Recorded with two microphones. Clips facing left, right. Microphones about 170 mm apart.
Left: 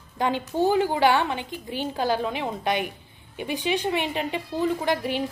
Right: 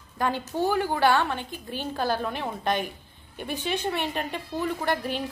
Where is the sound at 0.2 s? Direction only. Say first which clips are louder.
Left 3 dB; 15° left (ahead or behind).